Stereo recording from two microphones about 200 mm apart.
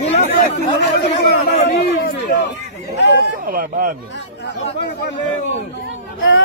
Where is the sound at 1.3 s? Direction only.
60° left (ahead or behind).